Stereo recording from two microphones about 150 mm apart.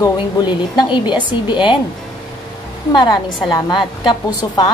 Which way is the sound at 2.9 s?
25° left (ahead or behind).